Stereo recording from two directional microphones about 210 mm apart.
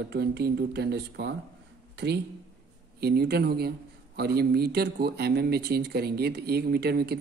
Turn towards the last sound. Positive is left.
turn(degrees=-50)  # may be behind; listen again after turning